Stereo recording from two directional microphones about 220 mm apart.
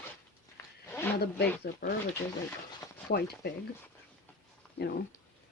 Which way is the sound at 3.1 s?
45° left (ahead or behind).